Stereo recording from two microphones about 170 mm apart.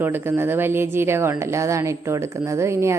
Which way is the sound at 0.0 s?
15° right (ahead or behind).